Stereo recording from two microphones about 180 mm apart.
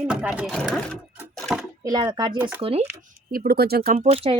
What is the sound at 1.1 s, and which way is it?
Sewing machine, centre (ahead or behind).